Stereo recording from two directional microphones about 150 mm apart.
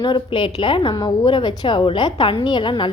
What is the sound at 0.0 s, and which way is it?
A woman's voice, 30° left (ahead or behind).